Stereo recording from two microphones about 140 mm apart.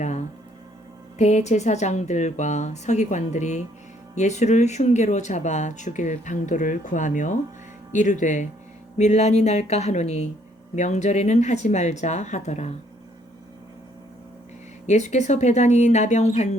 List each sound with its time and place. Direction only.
1.2 s speech: 55° left (ahead or behind)
14.8 s speech: 55° left (ahead or behind)